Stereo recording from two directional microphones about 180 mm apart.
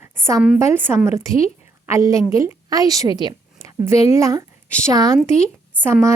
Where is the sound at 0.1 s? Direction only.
15° right (ahead or behind).